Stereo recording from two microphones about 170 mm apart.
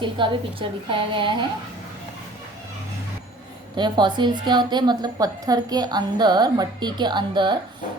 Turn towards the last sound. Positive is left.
turn(degrees=-25)  # may be behind; listen again after turning